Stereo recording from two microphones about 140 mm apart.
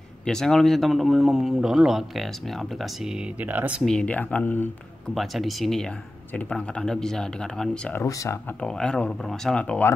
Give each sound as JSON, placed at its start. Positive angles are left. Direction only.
{"t": 0.2, "sound": "speech", "side_deg": 5}
{"t": 3.8, "sound": "speech", "side_deg": 5}
{"t": 5.1, "sound": "speech", "side_deg": 0}
{"t": 8.0, "sound": "speech", "side_deg": 20}
{"t": 8.5, "sound": "speech", "side_deg": 5}